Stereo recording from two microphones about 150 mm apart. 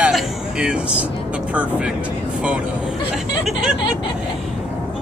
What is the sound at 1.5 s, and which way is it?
Speech, 10° right (ahead or behind).